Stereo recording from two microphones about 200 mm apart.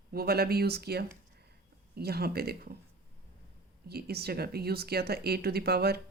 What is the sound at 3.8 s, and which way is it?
Speech, 50° right (ahead or behind).